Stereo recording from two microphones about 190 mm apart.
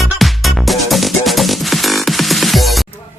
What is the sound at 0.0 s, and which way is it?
Music, centre (ahead or behind).